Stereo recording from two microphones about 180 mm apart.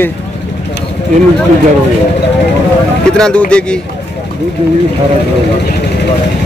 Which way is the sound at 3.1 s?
5° left (ahead or behind).